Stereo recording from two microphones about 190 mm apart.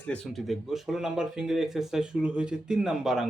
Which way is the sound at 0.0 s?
5° left (ahead or behind).